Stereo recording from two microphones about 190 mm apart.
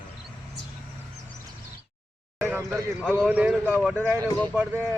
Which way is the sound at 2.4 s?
15° right (ahead or behind).